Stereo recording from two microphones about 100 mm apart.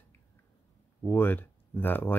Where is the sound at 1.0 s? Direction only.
20° left (ahead or behind).